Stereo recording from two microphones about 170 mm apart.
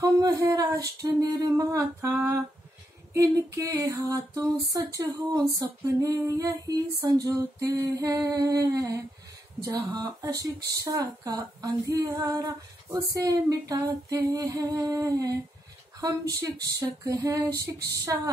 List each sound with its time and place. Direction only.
0.0 s speech: 20° right (ahead or behind)
1.4 s humming: 20° right (ahead or behind)
3.1 s speech: 20° right (ahead or behind)